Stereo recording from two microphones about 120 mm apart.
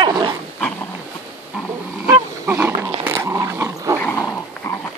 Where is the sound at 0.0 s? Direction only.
40° right (ahead or behind).